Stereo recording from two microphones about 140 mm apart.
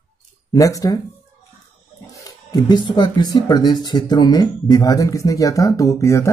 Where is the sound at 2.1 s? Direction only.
25° left (ahead or behind).